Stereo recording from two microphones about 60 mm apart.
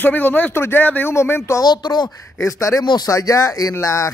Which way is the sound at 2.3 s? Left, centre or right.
Left.